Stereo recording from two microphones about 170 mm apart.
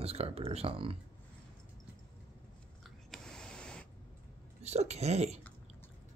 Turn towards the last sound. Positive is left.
turn(degrees=-40)  # may be behind; listen again after turning